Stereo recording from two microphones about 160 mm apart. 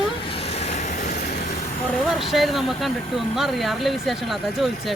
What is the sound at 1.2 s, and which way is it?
Vehicle, 90° left.